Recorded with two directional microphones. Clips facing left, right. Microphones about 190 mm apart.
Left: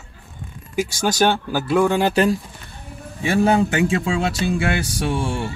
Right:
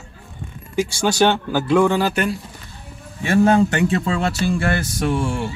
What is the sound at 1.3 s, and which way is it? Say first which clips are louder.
Speech: right 2 dB; 10° left (ahead or behind).